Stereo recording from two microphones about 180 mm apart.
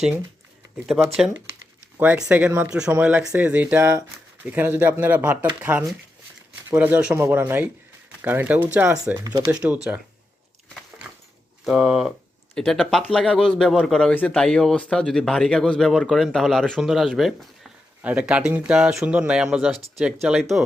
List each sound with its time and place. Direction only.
0.9 s speech: 10° right (ahead or behind)
9.2 s speech: 20° right (ahead or behind)
9.5 s speech: 5° right (ahead or behind)
11.6 s speech: centre (ahead or behind)